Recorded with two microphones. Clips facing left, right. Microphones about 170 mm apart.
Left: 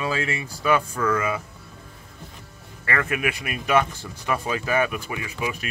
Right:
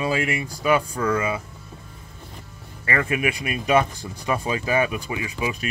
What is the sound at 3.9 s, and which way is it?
Speech, 15° right (ahead or behind).